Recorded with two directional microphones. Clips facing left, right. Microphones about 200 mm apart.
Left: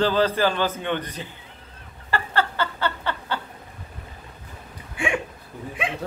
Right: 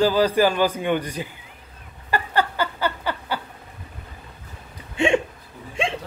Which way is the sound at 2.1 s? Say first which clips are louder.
Right 2 dB; 15° right (ahead or behind).